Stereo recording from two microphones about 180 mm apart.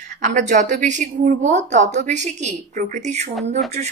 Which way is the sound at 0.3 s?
40° right (ahead or behind).